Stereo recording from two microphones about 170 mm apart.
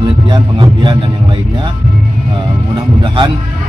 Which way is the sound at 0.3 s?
30° right (ahead or behind).